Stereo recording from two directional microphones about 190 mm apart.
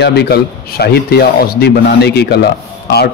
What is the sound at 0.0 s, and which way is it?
Speech, 60° left (ahead or behind).